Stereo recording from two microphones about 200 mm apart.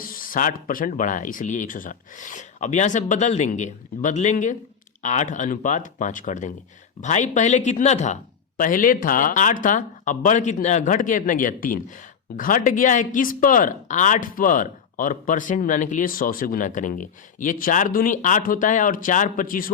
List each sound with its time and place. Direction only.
0.0 s speech: 45° left (ahead or behind)